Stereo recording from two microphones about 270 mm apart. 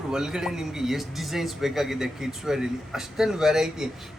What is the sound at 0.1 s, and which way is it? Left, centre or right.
Speech, centre.